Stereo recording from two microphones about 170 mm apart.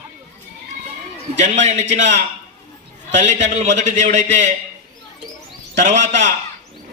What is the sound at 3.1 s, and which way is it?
A man's voice, 45° right (ahead or behind).